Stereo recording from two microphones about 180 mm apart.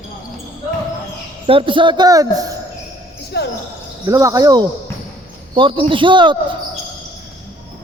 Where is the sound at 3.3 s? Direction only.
65° left (ahead or behind).